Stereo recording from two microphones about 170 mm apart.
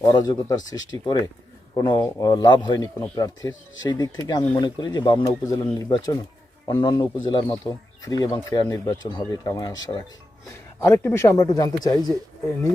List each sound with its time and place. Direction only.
0.1 s speech: 25° left (ahead or behind)